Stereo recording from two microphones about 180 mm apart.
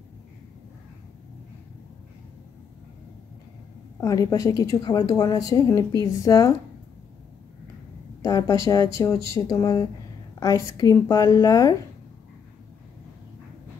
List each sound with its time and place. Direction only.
4.0 s a woman's voice: 20° left (ahead or behind)
8.2 s a woman's voice: 20° left (ahead or behind)